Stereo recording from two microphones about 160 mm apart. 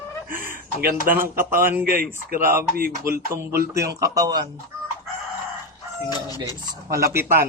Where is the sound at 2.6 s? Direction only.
65° right (ahead or behind).